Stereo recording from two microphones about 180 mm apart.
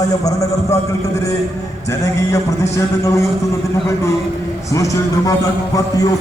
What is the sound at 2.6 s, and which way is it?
Speech, 15° left (ahead or behind).